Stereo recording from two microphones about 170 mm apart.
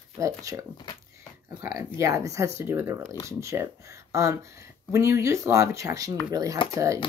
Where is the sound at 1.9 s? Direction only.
20° right (ahead or behind).